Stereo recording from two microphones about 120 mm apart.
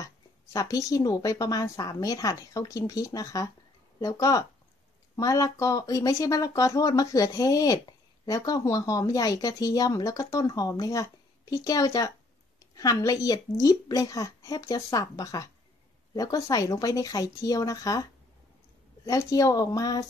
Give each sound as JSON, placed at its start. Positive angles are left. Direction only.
{"t": 0.0, "sound": "speech", "side_deg": 30}
{"t": 19.0, "sound": "speech", "side_deg": 25}